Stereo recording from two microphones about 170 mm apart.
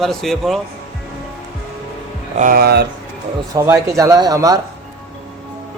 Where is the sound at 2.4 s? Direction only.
60° right (ahead or behind).